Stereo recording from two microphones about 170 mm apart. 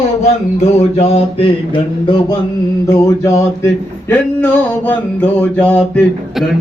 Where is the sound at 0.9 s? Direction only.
35° left (ahead or behind).